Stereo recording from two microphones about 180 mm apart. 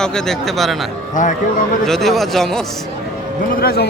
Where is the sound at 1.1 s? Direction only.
45° left (ahead or behind).